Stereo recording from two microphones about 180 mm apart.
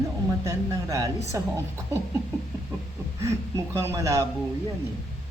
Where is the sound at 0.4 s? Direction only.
20° right (ahead or behind).